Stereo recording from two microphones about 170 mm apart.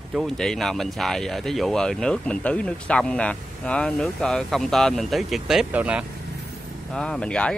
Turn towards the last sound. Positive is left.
turn(degrees=5)  # may be behind; listen again after turning